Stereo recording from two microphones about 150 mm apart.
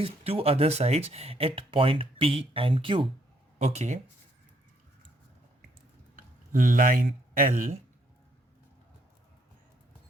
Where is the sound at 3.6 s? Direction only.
45° right (ahead or behind).